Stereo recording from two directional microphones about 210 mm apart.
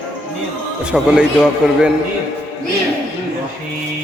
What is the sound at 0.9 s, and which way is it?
Speech, 5° right (ahead or behind).